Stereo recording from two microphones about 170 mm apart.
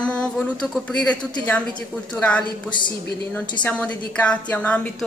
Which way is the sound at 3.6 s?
10° left (ahead or behind).